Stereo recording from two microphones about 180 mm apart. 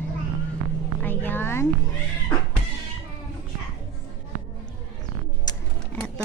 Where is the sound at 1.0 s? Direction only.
10° left (ahead or behind).